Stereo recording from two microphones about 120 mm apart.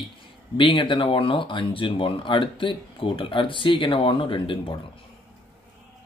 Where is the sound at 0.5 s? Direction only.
45° left (ahead or behind).